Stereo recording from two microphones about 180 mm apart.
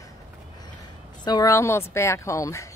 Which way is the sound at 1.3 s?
20° left (ahead or behind).